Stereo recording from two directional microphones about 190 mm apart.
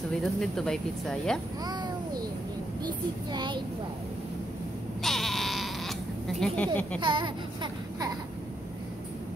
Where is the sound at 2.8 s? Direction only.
25° right (ahead or behind).